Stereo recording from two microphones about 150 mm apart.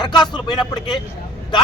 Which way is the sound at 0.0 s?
30° left (ahead or behind).